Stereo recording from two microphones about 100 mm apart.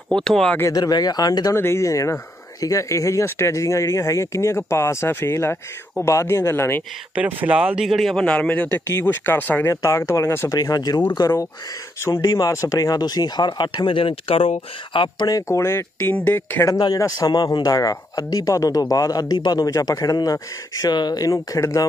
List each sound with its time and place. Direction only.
0.1 s speech: 5° left (ahead or behind)
0.7 s speech: 40° left (ahead or behind)
1.5 s speech: 25° left (ahead or behind)
7.4 s speech: 10° right (ahead or behind); by 10.5 s 25° left (ahead or behind)
10.5 s speech: 40° left (ahead or behind); by 15.2 s 55° left (ahead or behind)
15.2 s speech: 35° left (ahead or behind)
16.6 s speech: 40° left (ahead or behind)